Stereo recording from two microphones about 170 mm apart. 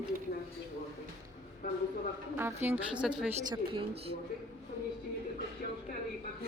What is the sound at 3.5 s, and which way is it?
Speech, 30° right (ahead or behind).